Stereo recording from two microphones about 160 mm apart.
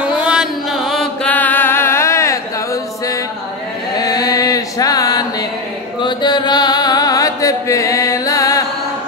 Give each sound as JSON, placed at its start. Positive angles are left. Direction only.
{"t": 0.0, "sound": "mantra", "side_deg": -5}
{"t": 1.2, "sound": "music", "side_deg": 10}
{"t": 3.9, "sound": "a sound", "side_deg": 25}
{"t": 5.9, "sound": "chant", "side_deg": 30}